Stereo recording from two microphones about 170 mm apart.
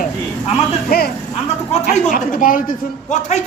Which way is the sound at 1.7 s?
45° left (ahead or behind).